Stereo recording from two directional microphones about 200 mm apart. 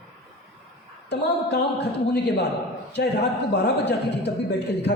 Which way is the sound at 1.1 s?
55° left (ahead or behind).